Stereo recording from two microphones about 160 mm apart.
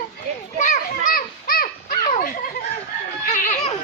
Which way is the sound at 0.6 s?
55° left (ahead or behind).